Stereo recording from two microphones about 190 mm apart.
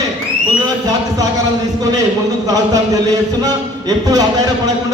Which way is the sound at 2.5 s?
20° right (ahead or behind).